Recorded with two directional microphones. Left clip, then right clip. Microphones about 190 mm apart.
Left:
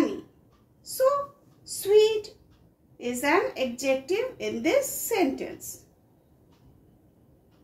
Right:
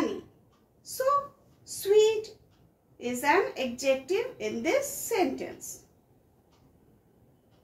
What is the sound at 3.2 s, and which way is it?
A woman's voice, 35° left (ahead or behind).